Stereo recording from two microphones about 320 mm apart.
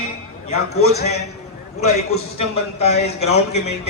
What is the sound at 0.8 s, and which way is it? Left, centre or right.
Speech, left.